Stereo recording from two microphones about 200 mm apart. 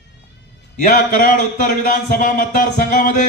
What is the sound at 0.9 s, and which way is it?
Speech, 40° left (ahead or behind).